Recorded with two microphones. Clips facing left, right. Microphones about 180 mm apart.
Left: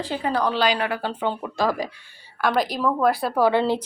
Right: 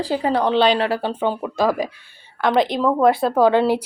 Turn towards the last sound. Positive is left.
turn(degrees=-15)  # may be behind; listen again after turning